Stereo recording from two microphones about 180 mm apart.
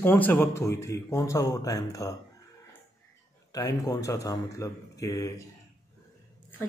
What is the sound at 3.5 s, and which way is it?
A man's voice, 20° left (ahead or behind).